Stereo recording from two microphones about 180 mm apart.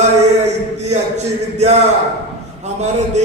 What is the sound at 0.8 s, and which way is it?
A man's voice, 40° right (ahead or behind).